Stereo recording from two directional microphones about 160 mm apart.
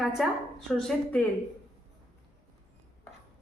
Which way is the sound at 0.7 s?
Centre (ahead or behind).